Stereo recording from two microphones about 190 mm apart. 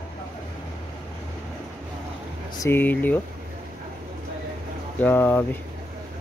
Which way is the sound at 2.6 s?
10° left (ahead or behind).